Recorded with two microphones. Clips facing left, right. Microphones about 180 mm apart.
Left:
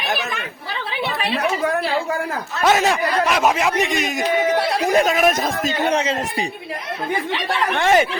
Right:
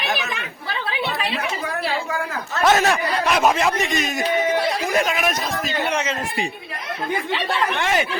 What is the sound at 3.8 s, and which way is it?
Speech, 15° left (ahead or behind).